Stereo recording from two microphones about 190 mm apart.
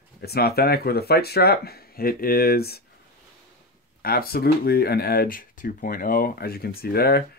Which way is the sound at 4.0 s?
55° left (ahead or behind).